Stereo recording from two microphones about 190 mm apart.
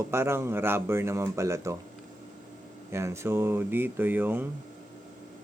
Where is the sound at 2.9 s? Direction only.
15° right (ahead or behind).